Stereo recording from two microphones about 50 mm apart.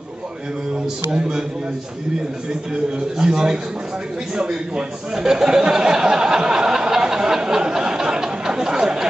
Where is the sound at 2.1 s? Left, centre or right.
Centre.